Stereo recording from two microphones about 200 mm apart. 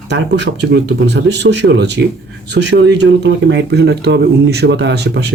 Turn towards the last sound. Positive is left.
turn(degrees=-60)  # may be behind; listen again after turning